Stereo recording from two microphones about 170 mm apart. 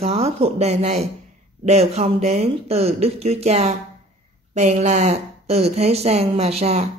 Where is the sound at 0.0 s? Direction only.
35° right (ahead or behind).